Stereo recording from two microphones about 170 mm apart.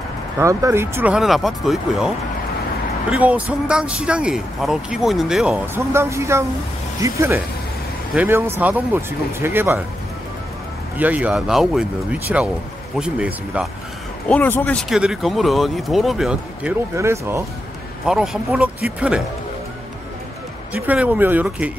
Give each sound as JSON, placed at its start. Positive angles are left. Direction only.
{"t": 0.4, "sound": "speech", "side_deg": -20}
{"t": 5.8, "sound": "speech", "side_deg": -15}
{"t": 11.0, "sound": "speech", "side_deg": -10}
{"t": 14.3, "sound": "speech", "side_deg": 10}
{"t": 16.9, "sound": "speech", "side_deg": -15}
{"t": 18.0, "sound": "speech", "side_deg": -5}
{"t": 20.7, "sound": "speech", "side_deg": -10}